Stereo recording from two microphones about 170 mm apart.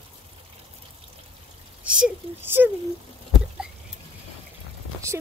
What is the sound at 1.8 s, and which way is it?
Speech, 5° right (ahead or behind).